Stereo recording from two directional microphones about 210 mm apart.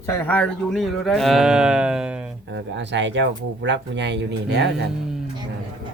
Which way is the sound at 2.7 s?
60° right (ahead or behind).